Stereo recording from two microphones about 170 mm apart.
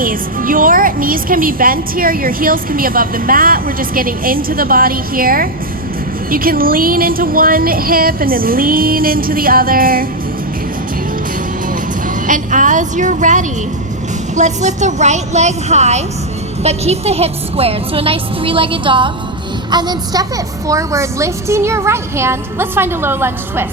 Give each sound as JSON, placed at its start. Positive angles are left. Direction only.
{"t": 0.0, "sound": "a woman's voice", "side_deg": -55}
{"t": 12.0, "sound": "a woman's voice", "side_deg": -50}